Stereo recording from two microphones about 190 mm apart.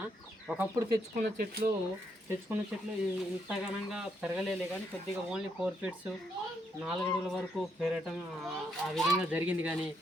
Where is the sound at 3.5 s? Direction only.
5° right (ahead or behind).